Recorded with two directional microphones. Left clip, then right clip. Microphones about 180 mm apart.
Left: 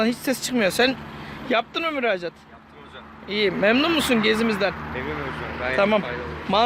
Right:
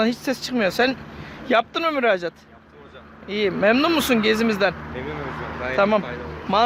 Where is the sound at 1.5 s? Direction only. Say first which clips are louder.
Right 3 dB; 15° right (ahead or behind).